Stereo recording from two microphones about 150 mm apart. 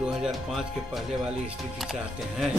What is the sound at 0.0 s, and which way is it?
Speech, 5° right (ahead or behind).